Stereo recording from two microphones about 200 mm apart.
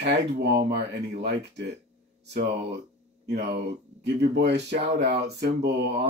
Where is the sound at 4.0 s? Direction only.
60° right (ahead or behind).